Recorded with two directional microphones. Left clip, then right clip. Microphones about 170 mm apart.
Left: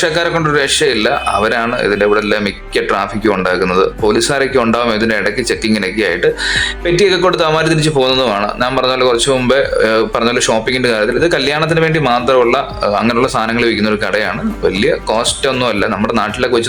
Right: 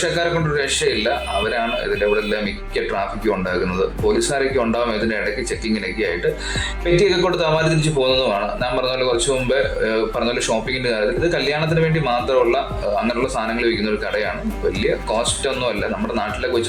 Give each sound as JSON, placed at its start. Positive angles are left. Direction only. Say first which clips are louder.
{"t": 0.0, "sound": "speech", "louder": "left 6 dB", "side_deg": 35}
{"t": 6.8, "sound": "speech", "louder": "left 4 dB", "side_deg": 30}
{"t": 13.6, "sound": "speech", "louder": "left 6 dB", "side_deg": 35}